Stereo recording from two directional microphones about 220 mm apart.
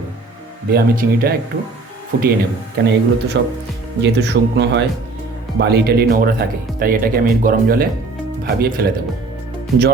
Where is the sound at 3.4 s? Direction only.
50° right (ahead or behind).